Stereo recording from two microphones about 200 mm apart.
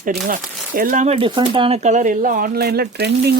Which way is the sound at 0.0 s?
45° right (ahead or behind).